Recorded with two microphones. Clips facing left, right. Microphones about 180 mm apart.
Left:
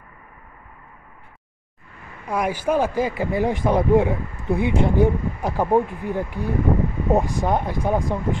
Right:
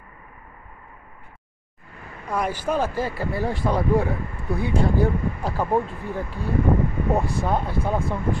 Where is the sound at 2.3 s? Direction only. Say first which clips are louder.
Left 3 dB; 10° left (ahead or behind).